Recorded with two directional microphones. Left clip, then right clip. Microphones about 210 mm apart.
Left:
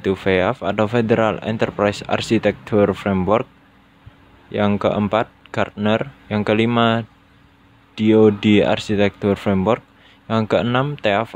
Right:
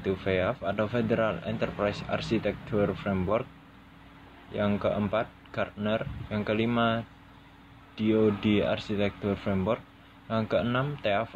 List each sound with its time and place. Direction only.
0.0 s speech: 50° left (ahead or behind)
4.5 s speech: 50° left (ahead or behind)